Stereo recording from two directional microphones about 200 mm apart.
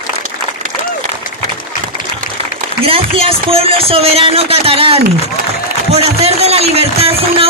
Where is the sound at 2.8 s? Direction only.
30° right (ahead or behind).